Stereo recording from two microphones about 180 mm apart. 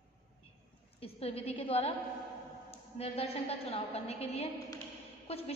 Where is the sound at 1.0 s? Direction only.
35° left (ahead or behind).